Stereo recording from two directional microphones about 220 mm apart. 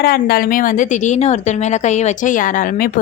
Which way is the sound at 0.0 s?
40° left (ahead or behind).